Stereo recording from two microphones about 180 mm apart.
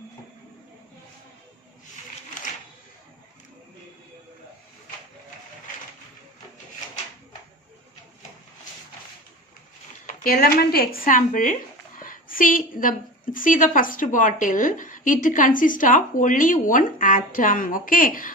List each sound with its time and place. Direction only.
10.1 s a woman's voice: 55° left (ahead or behind)